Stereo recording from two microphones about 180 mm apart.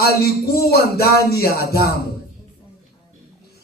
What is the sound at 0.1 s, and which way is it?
A man's voice, 60° left (ahead or behind).